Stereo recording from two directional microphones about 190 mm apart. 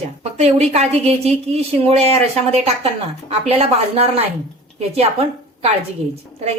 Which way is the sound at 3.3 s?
30° right (ahead or behind).